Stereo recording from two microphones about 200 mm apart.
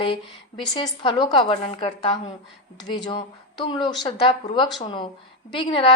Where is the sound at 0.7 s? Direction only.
25° left (ahead or behind).